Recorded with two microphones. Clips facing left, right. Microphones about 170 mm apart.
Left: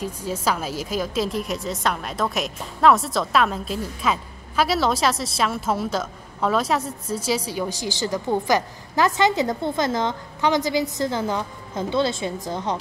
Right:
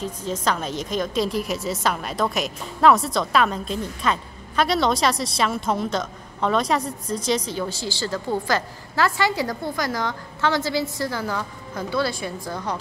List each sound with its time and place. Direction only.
0.0 s a woman's voice: 10° left (ahead or behind)